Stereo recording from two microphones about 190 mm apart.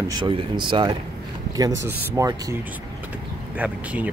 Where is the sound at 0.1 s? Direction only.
25° right (ahead or behind).